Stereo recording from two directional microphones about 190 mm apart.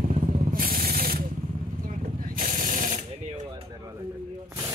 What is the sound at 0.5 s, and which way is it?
Sanding, 50° right (ahead or behind).